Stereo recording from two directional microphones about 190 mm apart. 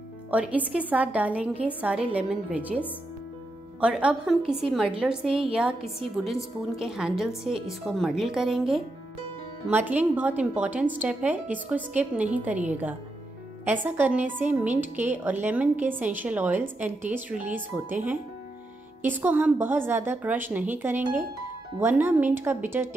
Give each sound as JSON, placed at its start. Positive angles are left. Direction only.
{"t": 0.3, "sound": "a woman's voice", "side_deg": -10}
{"t": 3.8, "sound": "a woman's voice", "side_deg": -5}
{"t": 5.8, "sound": "a woman's voice", "side_deg": -30}
{"t": 6.6, "sound": "a woman's voice", "side_deg": -5}